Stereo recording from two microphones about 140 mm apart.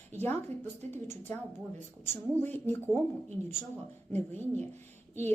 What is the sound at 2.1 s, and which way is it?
Speech, 15° left (ahead or behind).